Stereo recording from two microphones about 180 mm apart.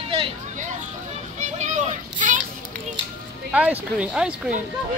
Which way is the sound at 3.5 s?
10° right (ahead or behind).